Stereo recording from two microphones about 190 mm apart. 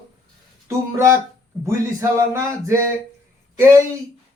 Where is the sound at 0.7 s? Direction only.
15° right (ahead or behind).